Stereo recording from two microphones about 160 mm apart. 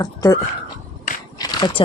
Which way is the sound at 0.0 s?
20° left (ahead or behind).